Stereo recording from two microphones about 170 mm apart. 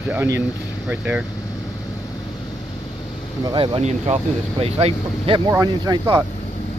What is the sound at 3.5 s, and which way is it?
Speech, 35° right (ahead or behind).